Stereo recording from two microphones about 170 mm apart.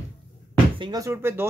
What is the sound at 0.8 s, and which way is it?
Speech, 20° right (ahead or behind).